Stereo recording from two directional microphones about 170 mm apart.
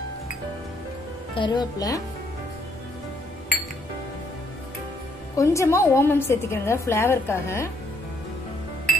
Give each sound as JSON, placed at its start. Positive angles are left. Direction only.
{"t": 1.3, "sound": "a woman's voice", "side_deg": 25}
{"t": 5.3, "sound": "a woman's voice", "side_deg": 20}